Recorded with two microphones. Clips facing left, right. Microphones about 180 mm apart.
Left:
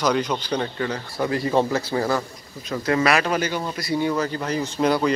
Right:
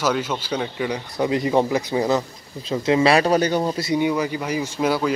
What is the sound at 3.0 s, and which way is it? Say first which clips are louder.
Speech: right 6 dB; 35° right (ahead or behind).